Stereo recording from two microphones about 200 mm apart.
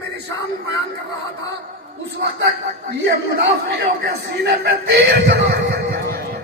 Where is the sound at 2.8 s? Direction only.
55° right (ahead or behind).